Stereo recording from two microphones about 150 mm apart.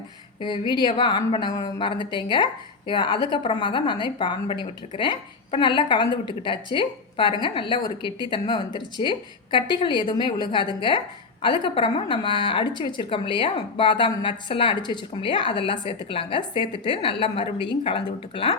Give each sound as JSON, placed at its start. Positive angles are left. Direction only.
{"t": 0.4, "sound": "speech", "side_deg": 30}